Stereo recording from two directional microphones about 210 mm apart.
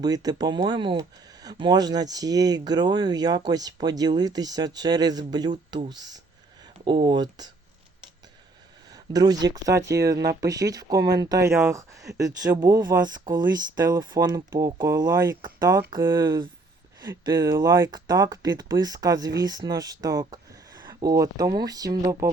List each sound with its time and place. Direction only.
0.0 s speech: 20° right (ahead or behind)
8.9 s speech: 20° right (ahead or behind)